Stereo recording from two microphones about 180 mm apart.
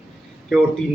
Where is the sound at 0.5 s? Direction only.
Centre (ahead or behind).